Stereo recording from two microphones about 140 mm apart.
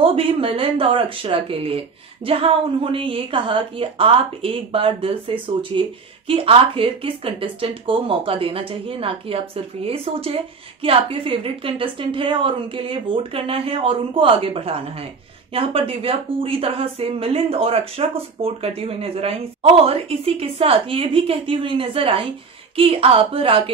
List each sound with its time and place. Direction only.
0.0 s speech: 40° right (ahead or behind)